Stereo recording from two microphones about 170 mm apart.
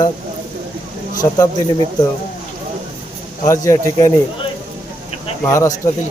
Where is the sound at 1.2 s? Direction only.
20° left (ahead or behind).